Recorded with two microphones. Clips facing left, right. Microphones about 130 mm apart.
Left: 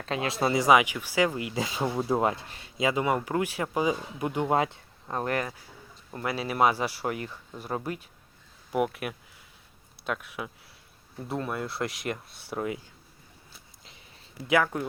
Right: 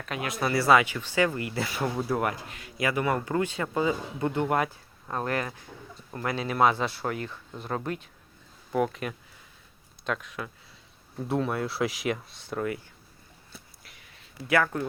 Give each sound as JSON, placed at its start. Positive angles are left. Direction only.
{"t": 0.0, "sound": "speech", "side_deg": 30}
{"t": 6.1, "sound": "speech", "side_deg": 10}
{"t": 11.2, "sound": "speech", "side_deg": 0}
{"t": 14.4, "sound": "speech", "side_deg": 15}